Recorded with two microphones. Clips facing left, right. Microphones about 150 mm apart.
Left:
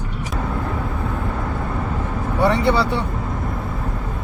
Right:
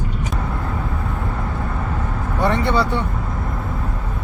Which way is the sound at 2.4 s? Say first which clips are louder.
Left 2 dB; 10° left (ahead or behind).